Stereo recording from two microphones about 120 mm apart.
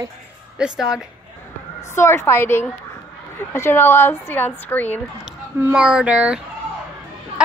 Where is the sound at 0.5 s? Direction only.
5° right (ahead or behind).